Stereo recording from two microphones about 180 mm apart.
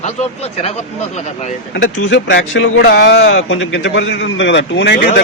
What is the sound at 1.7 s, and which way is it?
A man's voice, 85° left.